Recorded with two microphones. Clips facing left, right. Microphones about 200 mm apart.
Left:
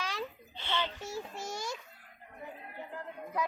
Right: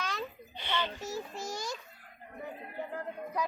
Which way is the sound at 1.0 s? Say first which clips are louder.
Right 2 dB; 25° left (ahead or behind).